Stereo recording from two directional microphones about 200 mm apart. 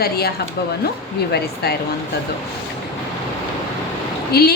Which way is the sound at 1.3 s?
55° left (ahead or behind).